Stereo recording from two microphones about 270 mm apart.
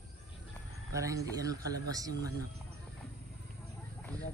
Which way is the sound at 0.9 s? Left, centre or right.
Centre.